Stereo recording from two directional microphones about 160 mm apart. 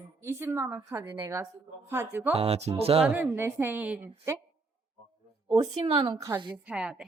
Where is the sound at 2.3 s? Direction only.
40° right (ahead or behind).